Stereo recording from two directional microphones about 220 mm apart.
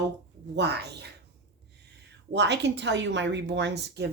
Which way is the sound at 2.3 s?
50° right (ahead or behind).